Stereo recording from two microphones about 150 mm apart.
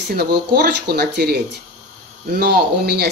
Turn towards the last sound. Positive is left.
turn(degrees=-90)